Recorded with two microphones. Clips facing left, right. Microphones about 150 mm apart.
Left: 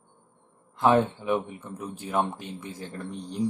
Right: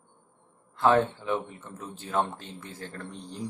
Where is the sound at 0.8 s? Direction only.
15° left (ahead or behind).